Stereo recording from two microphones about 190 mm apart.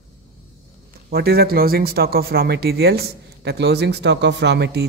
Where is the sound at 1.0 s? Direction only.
55° right (ahead or behind).